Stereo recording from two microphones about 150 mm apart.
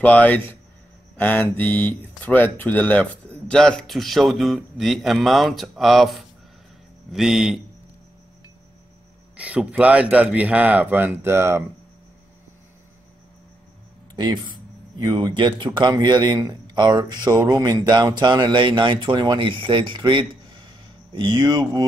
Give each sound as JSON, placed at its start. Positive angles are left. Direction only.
{"t": 0.0, "sound": "a man's voice", "side_deg": 10}
{"t": 9.4, "sound": "speech", "side_deg": -10}
{"t": 14.1, "sound": "a man's voice", "side_deg": -30}